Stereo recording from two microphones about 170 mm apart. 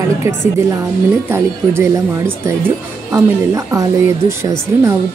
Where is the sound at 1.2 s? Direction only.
15° right (ahead or behind).